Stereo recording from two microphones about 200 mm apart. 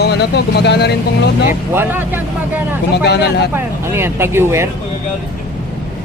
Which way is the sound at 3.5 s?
10° right (ahead or behind).